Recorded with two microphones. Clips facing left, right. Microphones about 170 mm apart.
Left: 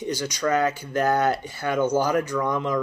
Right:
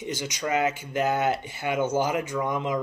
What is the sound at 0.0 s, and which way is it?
Speech, 20° right (ahead or behind).